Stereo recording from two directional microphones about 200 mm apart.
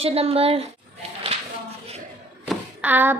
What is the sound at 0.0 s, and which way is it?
Speech, 30° right (ahead or behind).